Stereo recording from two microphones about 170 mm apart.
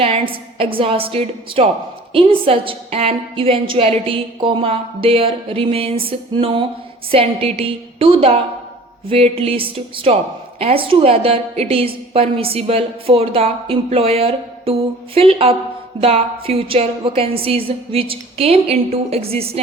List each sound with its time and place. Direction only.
0.0 s a woman's voice: 35° right (ahead or behind)